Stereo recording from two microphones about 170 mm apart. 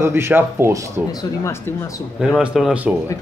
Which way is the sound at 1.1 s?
20° left (ahead or behind).